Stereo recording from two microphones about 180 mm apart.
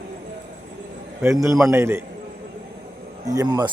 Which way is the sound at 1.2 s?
15° right (ahead or behind).